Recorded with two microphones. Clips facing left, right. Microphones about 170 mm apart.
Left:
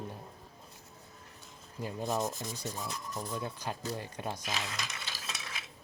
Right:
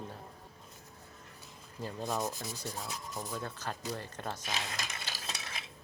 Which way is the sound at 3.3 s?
15° left (ahead or behind).